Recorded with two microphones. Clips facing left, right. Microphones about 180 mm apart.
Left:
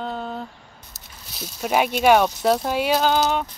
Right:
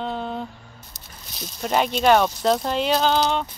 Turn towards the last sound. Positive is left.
turn(degrees=5)  # may be behind; listen again after turning